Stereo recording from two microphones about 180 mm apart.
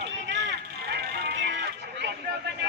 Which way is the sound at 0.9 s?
65° right (ahead or behind).